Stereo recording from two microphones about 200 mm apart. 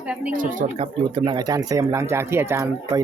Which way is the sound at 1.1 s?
20° right (ahead or behind).